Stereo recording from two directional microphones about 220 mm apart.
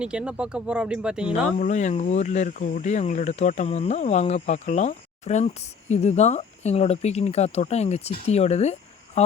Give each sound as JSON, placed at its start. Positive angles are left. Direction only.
{"t": 0.0, "sound": "speech", "side_deg": -5}
{"t": 1.3, "sound": "speech", "side_deg": 35}